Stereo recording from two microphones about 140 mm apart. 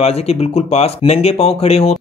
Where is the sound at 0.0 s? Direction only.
45° left (ahead or behind).